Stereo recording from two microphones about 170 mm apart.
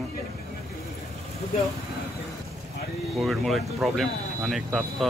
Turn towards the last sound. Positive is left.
turn(degrees=0)  # may be behind; listen again after turning